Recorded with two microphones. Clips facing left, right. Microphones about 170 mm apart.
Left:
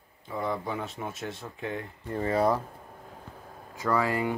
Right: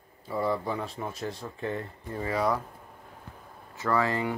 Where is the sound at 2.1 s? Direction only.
35° left (ahead or behind).